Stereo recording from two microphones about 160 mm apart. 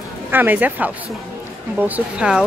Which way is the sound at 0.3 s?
10° right (ahead or behind).